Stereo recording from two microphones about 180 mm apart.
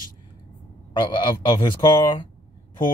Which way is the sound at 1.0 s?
25° left (ahead or behind).